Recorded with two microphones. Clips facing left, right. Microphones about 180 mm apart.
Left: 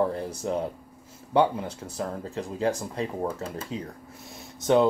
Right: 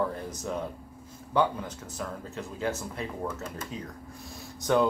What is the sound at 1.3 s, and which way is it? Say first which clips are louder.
Speech: left 4 dB; 30° left (ahead or behind).